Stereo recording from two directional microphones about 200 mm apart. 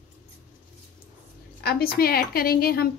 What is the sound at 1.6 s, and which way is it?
A woman's voice, 50° left (ahead or behind).